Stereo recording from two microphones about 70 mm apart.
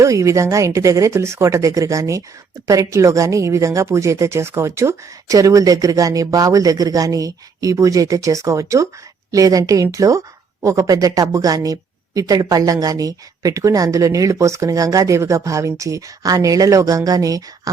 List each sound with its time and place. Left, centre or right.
0.0 s a woman's voice: right